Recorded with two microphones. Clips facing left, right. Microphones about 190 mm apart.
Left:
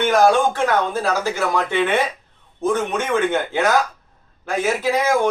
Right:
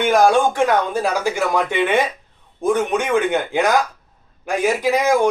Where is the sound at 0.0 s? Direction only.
15° right (ahead or behind).